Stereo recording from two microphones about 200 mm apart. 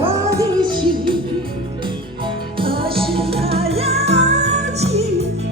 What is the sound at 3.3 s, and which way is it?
Music, 30° right (ahead or behind).